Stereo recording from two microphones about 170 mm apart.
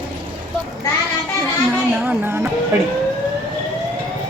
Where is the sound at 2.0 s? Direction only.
10° right (ahead or behind).